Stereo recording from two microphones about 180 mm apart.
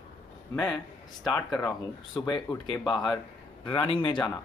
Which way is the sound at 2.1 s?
15° left (ahead or behind).